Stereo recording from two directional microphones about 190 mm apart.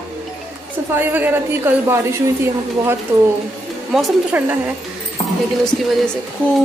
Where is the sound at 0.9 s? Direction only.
10° right (ahead or behind).